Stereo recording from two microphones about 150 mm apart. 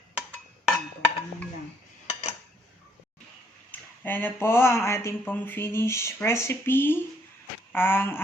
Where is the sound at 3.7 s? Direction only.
10° left (ahead or behind).